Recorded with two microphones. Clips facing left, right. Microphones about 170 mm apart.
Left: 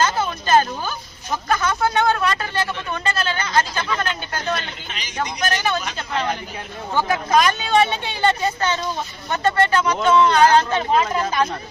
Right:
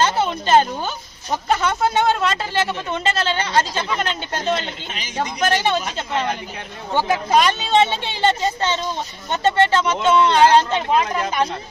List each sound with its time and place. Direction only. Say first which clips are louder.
0.0 s speech: right 2 dB; 25° right (ahead or behind)
11.0 s speech: even; 15° right (ahead or behind)